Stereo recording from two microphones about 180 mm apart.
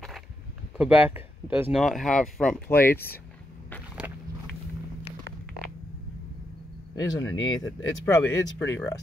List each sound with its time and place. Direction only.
0.7 s speech: 5° right (ahead or behind); by 3.2 s 10° left (ahead or behind)
4.0 s a sound: 15° right (ahead or behind)
7.0 s speech: 20° left (ahead or behind)